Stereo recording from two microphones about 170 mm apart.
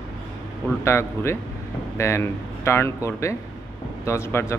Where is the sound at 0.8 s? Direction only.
15° left (ahead or behind).